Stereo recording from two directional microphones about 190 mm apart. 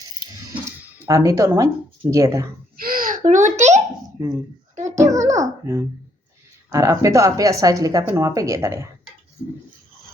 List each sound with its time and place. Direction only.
1.0 s speech: 15° right (ahead or behind)
2.7 s a sound: 50° right (ahead or behind)
3.2 s a child's voice: 40° right (ahead or behind)
4.2 s speech: 15° right (ahead or behind)
4.7 s a sound: 40° right (ahead or behind)
4.9 s speech: 15° right (ahead or behind)